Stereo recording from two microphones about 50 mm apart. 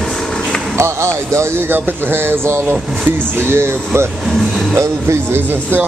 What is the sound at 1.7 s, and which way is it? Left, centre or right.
Speech, right.